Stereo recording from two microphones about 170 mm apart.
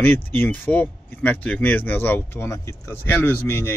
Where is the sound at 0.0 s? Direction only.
10° left (ahead or behind).